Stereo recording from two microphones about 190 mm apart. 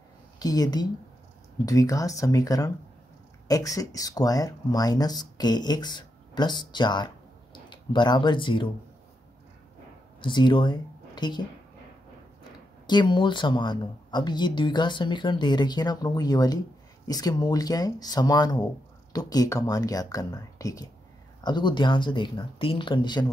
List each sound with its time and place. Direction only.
0.4 s speech: 20° left (ahead or behind)
10.2 s speech: 25° left (ahead or behind)
12.8 s speech: 25° left (ahead or behind)